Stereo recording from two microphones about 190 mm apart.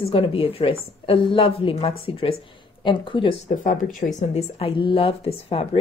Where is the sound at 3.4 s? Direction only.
45° left (ahead or behind).